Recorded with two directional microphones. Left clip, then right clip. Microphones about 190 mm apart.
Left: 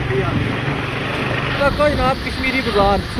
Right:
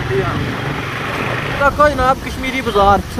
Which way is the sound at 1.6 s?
25° right (ahead or behind).